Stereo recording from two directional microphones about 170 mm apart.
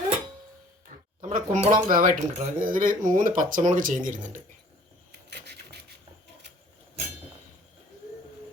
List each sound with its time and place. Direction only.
1.2 s speech: 45° right (ahead or behind)
5.3 s filing: 80° right